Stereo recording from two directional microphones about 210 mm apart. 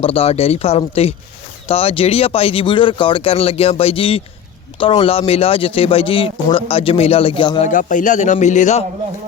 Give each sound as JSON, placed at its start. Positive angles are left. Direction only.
{"t": 0.0, "sound": "speech", "side_deg": 25}
{"t": 7.7, "sound": "a man's voice", "side_deg": 40}